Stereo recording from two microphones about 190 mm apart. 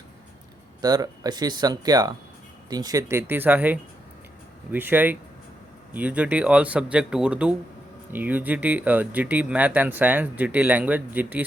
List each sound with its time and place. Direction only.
0.8 s speech: 20° right (ahead or behind)